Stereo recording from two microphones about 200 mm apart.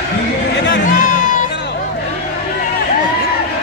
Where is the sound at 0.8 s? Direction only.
40° left (ahead or behind).